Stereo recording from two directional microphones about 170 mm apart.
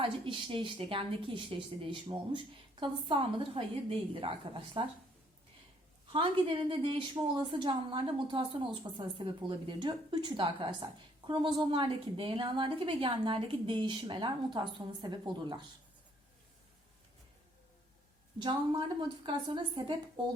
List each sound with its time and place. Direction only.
0.0 s a woman's voice: 30° right (ahead or behind)
6.1 s a woman's voice: 30° right (ahead or behind)
18.3 s a woman's voice: 25° right (ahead or behind)